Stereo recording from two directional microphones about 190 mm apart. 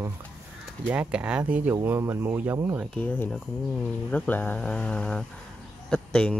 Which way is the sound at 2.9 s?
10° left (ahead or behind).